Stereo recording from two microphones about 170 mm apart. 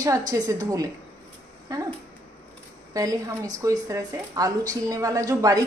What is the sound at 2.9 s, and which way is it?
Speech, 20° right (ahead or behind).